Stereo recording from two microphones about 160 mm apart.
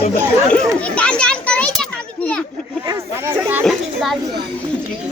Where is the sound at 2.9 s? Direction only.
15° right (ahead or behind).